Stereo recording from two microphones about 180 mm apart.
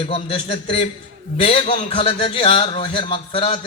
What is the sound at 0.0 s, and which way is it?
A man's voice, 35° left (ahead or behind).